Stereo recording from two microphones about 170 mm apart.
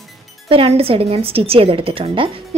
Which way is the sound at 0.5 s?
35° right (ahead or behind).